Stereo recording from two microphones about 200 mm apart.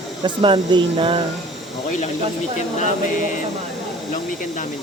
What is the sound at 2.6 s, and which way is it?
Speech, 35° left (ahead or behind).